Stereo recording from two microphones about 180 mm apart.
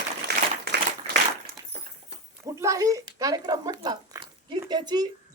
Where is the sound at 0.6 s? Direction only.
65° right (ahead or behind).